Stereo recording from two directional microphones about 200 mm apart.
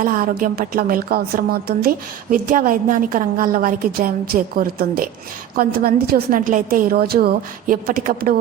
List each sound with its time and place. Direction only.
0.0 s a woman's voice: 45° right (ahead or behind)